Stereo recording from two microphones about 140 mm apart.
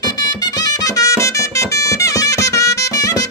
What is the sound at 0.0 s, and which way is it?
Music, 30° left (ahead or behind).